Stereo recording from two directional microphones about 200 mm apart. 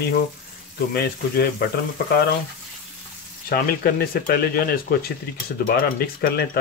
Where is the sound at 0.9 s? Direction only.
50° left (ahead or behind).